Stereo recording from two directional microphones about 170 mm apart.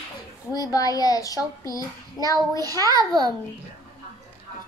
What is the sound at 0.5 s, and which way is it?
A child's voice, 20° left (ahead or behind).